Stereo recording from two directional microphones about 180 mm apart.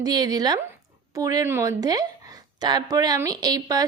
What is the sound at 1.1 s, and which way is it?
A woman's voice, 20° right (ahead or behind).